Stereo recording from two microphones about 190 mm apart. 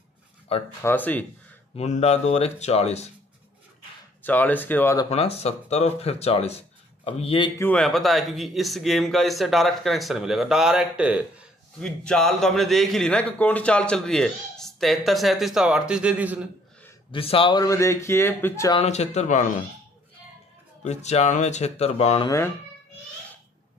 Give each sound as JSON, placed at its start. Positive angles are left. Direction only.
{"t": 0.5, "sound": "speech", "side_deg": 30}
{"t": 0.8, "sound": "speech", "side_deg": 10}
{"t": 1.8, "sound": "speech", "side_deg": 35}
{"t": 4.2, "sound": "speech", "side_deg": 10}
{"t": 5.1, "sound": "speech", "side_deg": 30}
{"t": 7.5, "sound": "a man's voice", "side_deg": 5}
{"t": 11.8, "sound": "a man's voice", "side_deg": 5}
{"t": 17.1, "sound": "speech", "side_deg": 30}
{"t": 18.8, "sound": "speech", "side_deg": 35}
{"t": 20.8, "sound": "speech", "side_deg": 35}